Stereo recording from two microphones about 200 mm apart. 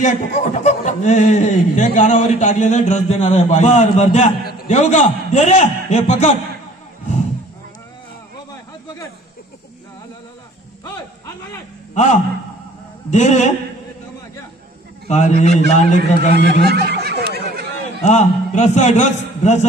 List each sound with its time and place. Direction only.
0.0 s speech: 35° left (ahead or behind)
4.5 s a sound: 50° left (ahead or behind)
4.7 s speech: 35° left (ahead or behind)
11.9 s a man's voice: 35° left (ahead or behind)
15.0 s speech: 35° left (ahead or behind)
16.0 s snicker: 55° right (ahead or behind)
18.0 s speech: 35° left (ahead or behind)